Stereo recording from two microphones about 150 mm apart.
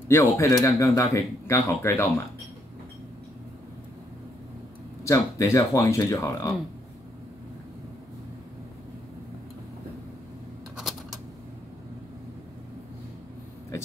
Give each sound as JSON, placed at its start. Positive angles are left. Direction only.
{"t": 0.1, "sound": "speech", "side_deg": 20}
{"t": 5.0, "sound": "speech", "side_deg": 20}
{"t": 10.8, "sound": "typewriter", "side_deg": 0}